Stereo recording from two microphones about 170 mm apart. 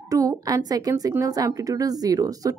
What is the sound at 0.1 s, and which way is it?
A woman's voice, 20° right (ahead or behind).